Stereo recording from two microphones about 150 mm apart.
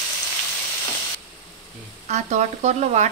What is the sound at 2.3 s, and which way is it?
Speech, 50° right (ahead or behind).